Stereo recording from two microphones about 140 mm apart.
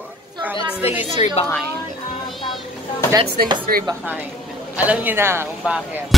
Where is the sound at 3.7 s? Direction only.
90° right.